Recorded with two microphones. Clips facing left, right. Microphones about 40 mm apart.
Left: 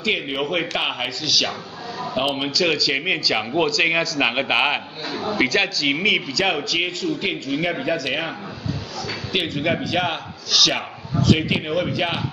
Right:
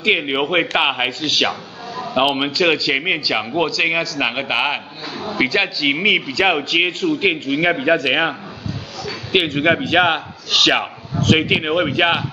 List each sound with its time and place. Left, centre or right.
0.0 s a man's voice: right
3.0 s a man's voice: centre
5.3 s a man's voice: centre; by 12.2 s right